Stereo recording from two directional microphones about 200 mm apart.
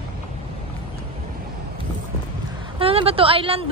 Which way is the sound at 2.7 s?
30° right (ahead or behind).